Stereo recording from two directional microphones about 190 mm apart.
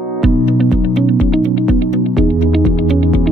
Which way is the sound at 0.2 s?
Centre (ahead or behind).